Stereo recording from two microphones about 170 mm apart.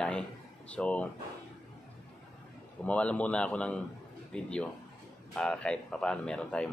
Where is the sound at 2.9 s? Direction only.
5° left (ahead or behind).